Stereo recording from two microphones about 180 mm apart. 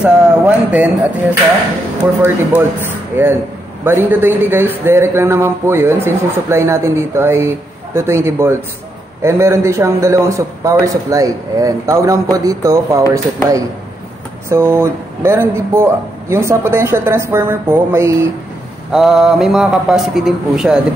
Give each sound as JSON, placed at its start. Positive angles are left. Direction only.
{"t": 0.0, "sound": "speech", "side_deg": -5}
{"t": 3.2, "sound": "a man's voice", "side_deg": -10}
{"t": 18.9, "sound": "a man's voice", "side_deg": 0}